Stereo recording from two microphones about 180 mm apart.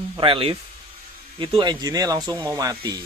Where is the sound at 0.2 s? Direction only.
30° right (ahead or behind).